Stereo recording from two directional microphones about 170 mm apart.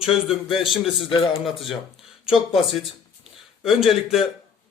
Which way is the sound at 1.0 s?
30° left (ahead or behind).